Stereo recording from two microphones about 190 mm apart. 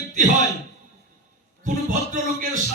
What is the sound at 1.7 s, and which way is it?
Speech, 40° right (ahead or behind).